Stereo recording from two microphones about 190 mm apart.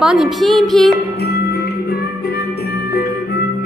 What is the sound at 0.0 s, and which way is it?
Speech, 5° right (ahead or behind).